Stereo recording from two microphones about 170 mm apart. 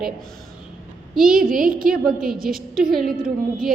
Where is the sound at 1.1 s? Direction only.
5° right (ahead or behind).